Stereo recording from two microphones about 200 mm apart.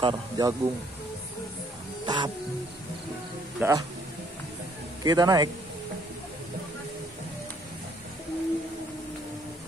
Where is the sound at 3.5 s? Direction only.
15° right (ahead or behind).